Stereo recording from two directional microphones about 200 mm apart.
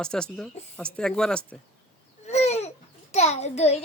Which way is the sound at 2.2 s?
35° left (ahead or behind).